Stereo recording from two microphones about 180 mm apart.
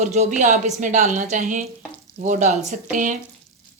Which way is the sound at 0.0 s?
40° right (ahead or behind).